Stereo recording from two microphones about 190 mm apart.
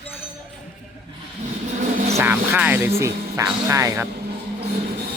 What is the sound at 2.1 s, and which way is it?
Speech, 10° right (ahead or behind).